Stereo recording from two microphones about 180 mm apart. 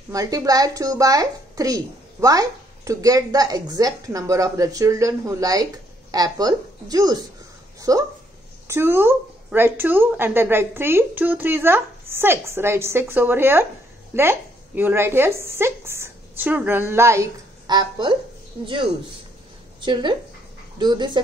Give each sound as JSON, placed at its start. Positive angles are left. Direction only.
{"t": 0.1, "sound": "a woman's voice", "side_deg": -20}
{"t": 19.8, "sound": "a woman's voice", "side_deg": -25}